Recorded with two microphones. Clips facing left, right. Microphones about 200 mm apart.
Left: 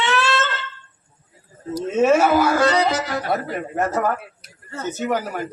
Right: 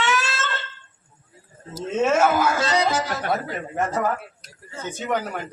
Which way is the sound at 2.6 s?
60° left (ahead or behind).